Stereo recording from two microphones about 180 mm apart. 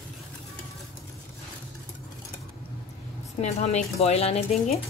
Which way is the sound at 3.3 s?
40° left (ahead or behind).